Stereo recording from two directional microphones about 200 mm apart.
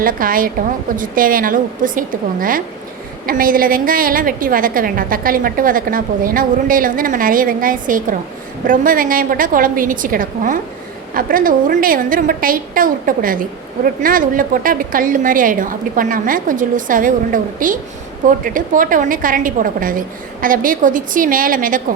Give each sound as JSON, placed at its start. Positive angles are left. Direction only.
{"t": 0.0, "sound": "a woman's voice", "side_deg": -45}